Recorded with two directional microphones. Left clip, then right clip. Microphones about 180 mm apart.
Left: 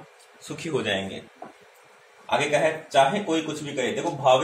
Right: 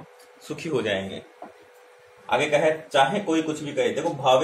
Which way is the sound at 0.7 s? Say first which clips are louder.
Right 1 dB; 10° right (ahead or behind).